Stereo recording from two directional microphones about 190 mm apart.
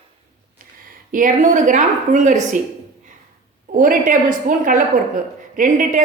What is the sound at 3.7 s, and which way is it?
Speech, 45° right (ahead or behind).